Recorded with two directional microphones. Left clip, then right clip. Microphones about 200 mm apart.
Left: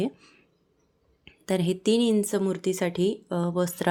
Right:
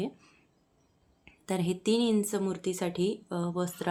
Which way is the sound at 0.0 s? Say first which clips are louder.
Left 6 dB; 20° left (ahead or behind).